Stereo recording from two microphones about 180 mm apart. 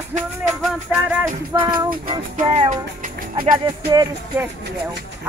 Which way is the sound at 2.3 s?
40° right (ahead or behind).